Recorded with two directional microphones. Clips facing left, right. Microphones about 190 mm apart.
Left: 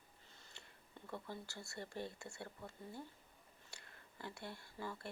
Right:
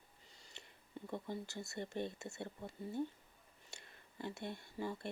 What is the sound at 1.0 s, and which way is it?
Speech, 20° right (ahead or behind).